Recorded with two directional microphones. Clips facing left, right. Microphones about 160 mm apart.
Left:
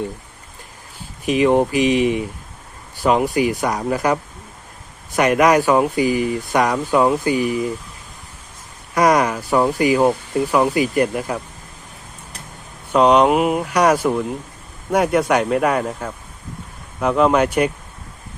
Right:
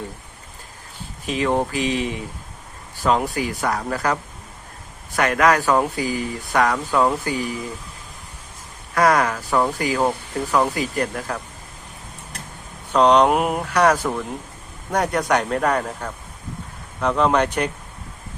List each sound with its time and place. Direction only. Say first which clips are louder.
1.2 s speech: left 6 dB; 15° left (ahead or behind)
9.0 s speech: left 2 dB; 15° left (ahead or behind)
12.9 s speech: left 2 dB; 10° left (ahead or behind)